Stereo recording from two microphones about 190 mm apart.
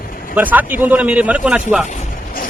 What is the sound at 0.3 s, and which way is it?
A man's voice, 10° right (ahead or behind).